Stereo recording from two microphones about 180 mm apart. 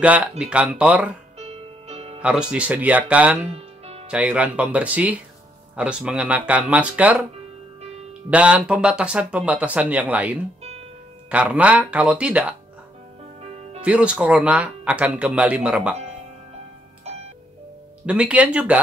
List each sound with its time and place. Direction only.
0.4 s speech: 5° right (ahead or behind)
1.4 s music: 35° right (ahead or behind)
2.5 s speech: 10° right (ahead or behind)
3.4 s music: 35° right (ahead or behind)
4.1 s speech: 5° right (ahead or behind)
8.3 s speech: 5° right (ahead or behind)
13.8 s speech: 5° right (ahead or behind)
18.0 s speech: 5° right (ahead or behind)